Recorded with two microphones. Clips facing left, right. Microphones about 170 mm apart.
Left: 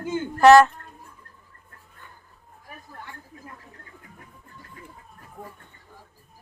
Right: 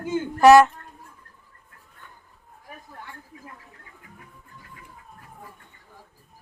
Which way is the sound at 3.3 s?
40° left (ahead or behind).